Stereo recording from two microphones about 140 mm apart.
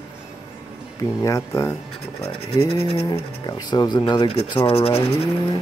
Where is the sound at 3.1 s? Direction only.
30° left (ahead or behind).